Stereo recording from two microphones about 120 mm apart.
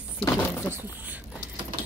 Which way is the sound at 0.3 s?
20° left (ahead or behind).